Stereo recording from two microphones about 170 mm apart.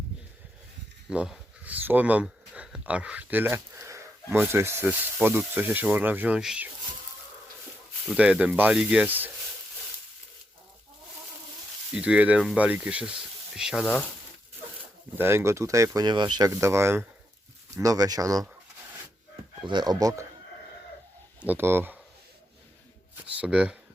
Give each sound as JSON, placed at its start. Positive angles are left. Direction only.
{"t": 1.1, "sound": "speech", "side_deg": -5}
{"t": 8.0, "sound": "speech", "side_deg": -5}
{"t": 11.9, "sound": "speech", "side_deg": -5}
{"t": 15.2, "sound": "speech", "side_deg": -15}
{"t": 19.6, "sound": "speech", "side_deg": -25}
{"t": 21.4, "sound": "speech", "side_deg": -10}
{"t": 23.3, "sound": "speech", "side_deg": -10}